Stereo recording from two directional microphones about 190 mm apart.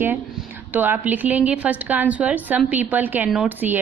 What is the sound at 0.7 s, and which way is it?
A woman's voice, 10° right (ahead or behind).